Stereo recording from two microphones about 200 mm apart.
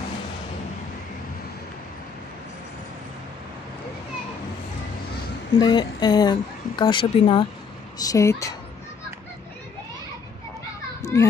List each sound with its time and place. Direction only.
5.6 s a sound: 20° left (ahead or behind)
8.0 s speech: 15° left (ahead or behind)
11.0 s children playing: 15° left (ahead or behind)